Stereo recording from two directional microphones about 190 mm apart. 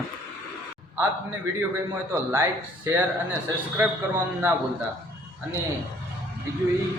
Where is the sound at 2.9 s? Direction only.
15° right (ahead or behind).